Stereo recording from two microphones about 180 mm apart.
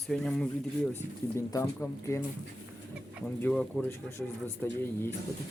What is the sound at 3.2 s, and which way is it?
Speech, 5° left (ahead or behind).